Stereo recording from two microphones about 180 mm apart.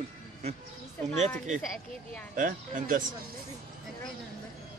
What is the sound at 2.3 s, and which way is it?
Speech, 50° right (ahead or behind).